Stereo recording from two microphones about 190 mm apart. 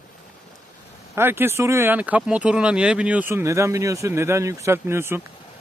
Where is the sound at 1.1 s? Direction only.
10° right (ahead or behind).